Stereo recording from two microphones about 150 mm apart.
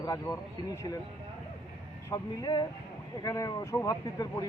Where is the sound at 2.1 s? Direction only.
25° left (ahead or behind).